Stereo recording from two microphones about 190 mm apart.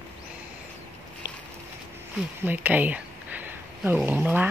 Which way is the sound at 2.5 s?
10° right (ahead or behind).